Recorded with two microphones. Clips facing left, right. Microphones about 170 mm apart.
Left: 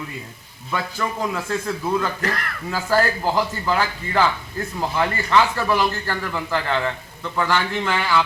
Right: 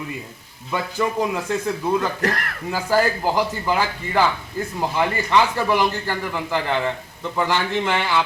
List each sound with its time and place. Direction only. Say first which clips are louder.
0.7 s speech: right 3 dB; 15° right (ahead or behind)